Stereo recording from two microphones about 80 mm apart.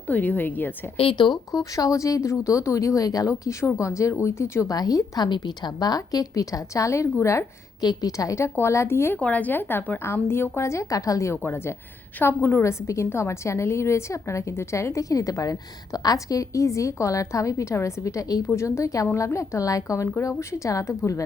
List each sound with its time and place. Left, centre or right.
0.1 s speech: left
1.1 s speech: left
1.5 s a woman's voice: left
4.7 s a woman's voice: left
7.8 s a woman's voice: left
9.1 s a woman's voice: centre; by 11.3 s left
11.4 s a woman's voice: left
18.4 s a woman's voice: left